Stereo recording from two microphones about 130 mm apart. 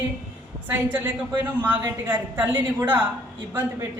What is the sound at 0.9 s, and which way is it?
A woman's voice, 15° right (ahead or behind).